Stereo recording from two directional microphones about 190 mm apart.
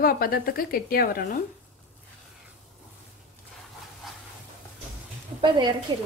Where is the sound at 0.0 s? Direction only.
50° left (ahead or behind).